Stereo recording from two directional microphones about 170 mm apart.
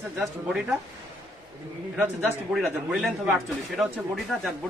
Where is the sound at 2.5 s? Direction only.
Centre (ahead or behind).